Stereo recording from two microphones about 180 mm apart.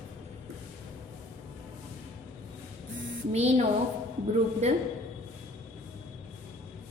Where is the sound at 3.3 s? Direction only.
35° right (ahead or behind).